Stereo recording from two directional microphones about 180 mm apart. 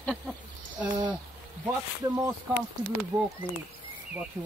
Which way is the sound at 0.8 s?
25° right (ahead or behind).